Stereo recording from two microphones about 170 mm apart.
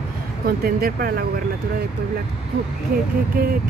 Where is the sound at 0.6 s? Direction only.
60° right (ahead or behind).